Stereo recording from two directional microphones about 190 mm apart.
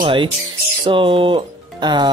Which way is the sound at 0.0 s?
25° right (ahead or behind).